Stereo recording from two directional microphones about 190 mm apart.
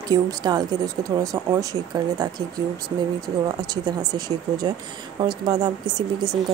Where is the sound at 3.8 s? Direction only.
20° right (ahead or behind).